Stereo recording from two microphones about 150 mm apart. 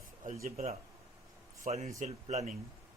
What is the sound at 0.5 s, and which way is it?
Speech, 45° right (ahead or behind).